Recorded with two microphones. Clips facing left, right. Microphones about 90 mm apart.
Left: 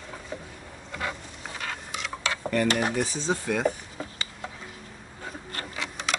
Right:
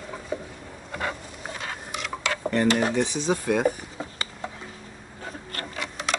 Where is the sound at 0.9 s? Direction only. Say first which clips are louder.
Right 2 dB; 40° right (ahead or behind).